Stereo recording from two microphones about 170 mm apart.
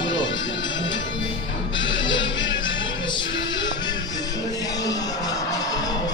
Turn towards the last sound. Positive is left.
turn(degrees=20)  # may be behind; listen again after turning